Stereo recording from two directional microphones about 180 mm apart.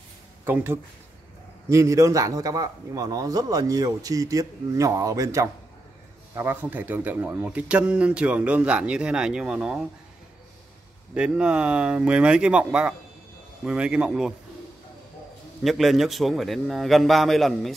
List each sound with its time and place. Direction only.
0.5 s a man's voice: 10° right (ahead or behind)
11.1 s a man's voice: 5° right (ahead or behind)
15.6 s a man's voice: centre (ahead or behind)